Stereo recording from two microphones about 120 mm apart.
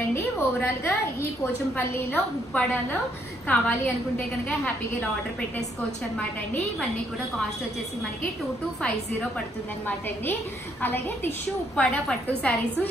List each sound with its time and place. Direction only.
0.1 s a woman's voice: 20° left (ahead or behind)
9.8 s a woman's voice: 15° left (ahead or behind)